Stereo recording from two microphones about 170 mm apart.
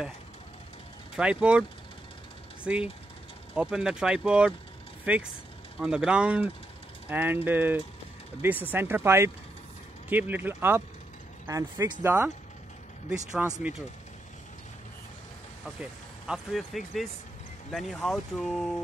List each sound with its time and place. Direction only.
1.1 s speech: 5° right (ahead or behind)
2.6 s speech: 5° right (ahead or behind)
13.6 s speech: 10° right (ahead or behind)
15.6 s speech: centre (ahead or behind)